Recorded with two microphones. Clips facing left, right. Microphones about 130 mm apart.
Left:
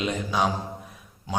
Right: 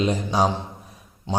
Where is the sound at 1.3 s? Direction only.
25° right (ahead or behind).